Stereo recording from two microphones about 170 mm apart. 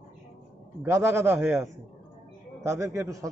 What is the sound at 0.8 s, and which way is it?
A man's voice, 15° right (ahead or behind).